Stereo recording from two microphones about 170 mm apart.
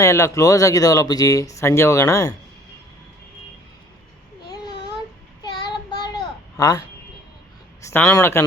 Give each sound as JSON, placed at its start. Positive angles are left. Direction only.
{"t": 0.0, "sound": "speech", "side_deg": 15}
{"t": 4.4, "sound": "a sound", "side_deg": 25}
{"t": 7.8, "sound": "speech", "side_deg": 15}